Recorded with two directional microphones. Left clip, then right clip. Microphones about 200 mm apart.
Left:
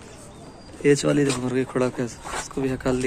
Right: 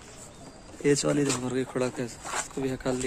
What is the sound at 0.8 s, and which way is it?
Speech, 10° right (ahead or behind).